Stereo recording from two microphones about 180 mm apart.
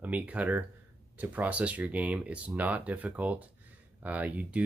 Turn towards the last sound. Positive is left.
turn(degrees=-10)  # may be behind; listen again after turning